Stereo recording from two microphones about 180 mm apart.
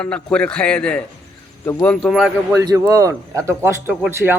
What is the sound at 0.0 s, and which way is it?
A man's voice, 5° left (ahead or behind).